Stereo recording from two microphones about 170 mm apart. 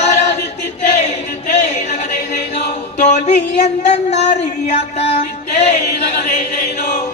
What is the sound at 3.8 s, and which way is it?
Speech, 40° left (ahead or behind).